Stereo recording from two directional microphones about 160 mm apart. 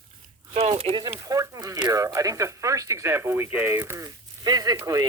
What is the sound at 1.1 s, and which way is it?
Speech, 20° right (ahead or behind).